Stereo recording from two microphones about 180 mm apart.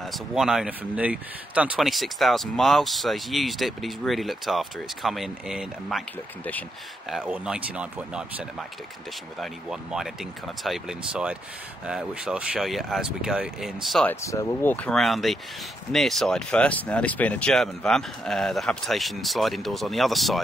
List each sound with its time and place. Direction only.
0.0 s speech: centre (ahead or behind)
14.2 s speech: 15° left (ahead or behind)